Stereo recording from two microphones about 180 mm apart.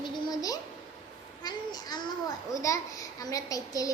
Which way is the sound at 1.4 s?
20° left (ahead or behind).